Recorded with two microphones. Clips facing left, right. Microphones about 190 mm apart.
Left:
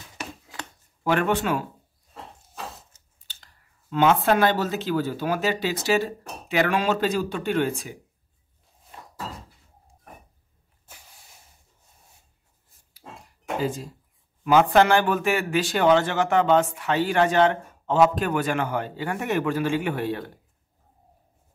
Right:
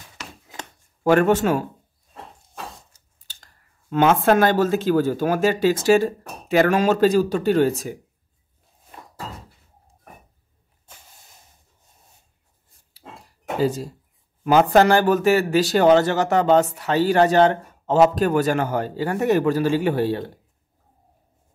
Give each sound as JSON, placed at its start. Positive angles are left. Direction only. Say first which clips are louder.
{"t": 1.0, "sound": "speech", "louder": "right 6 dB", "side_deg": -45}
{"t": 3.9, "sound": "speech", "louder": "right 3 dB", "side_deg": -50}
{"t": 13.6, "sound": "a man's voice", "louder": "right 6 dB", "side_deg": -40}